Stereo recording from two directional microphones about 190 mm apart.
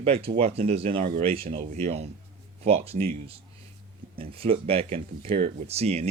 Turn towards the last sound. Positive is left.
turn(degrees=-35)  # may be behind; listen again after turning